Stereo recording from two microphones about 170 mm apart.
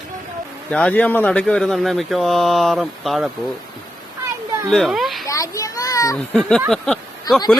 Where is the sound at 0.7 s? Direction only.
5° left (ahead or behind).